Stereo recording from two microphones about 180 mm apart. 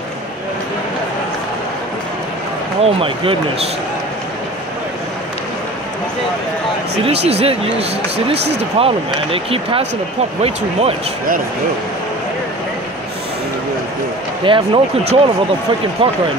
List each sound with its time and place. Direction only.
2.8 s speech: 30° right (ahead or behind)
7.2 s speech: 35° right (ahead or behind)
14.4 s speech: 30° right (ahead or behind)